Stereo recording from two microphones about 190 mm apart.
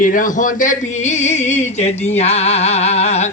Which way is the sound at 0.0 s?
45° left (ahead or behind).